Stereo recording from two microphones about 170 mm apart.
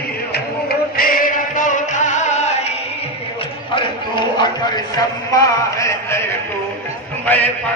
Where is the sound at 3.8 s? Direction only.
25° left (ahead or behind).